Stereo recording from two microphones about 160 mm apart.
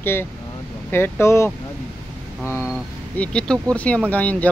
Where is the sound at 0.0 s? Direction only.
15° left (ahead or behind).